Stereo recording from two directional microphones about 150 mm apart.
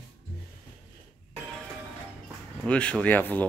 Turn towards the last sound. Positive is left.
turn(degrees=10)  # may be behind; listen again after turning